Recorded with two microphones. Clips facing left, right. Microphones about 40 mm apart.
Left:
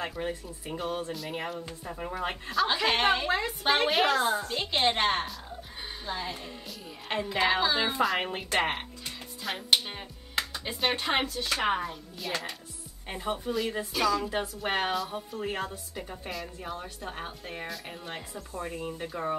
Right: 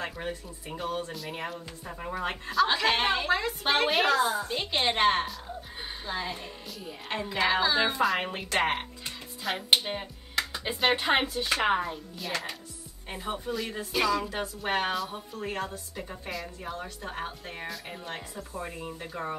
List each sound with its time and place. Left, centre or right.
0.0 s a woman's voice: centre
3.3 s speech: centre
3.6 s a woman's voice: centre
4.4 s a woman's voice: centre
9.7 s speech: centre
10.5 s a sound: right
11.0 s speech: centre
11.8 s a woman's voice: centre
13.9 s speech: centre
14.2 s a woman's voice: centre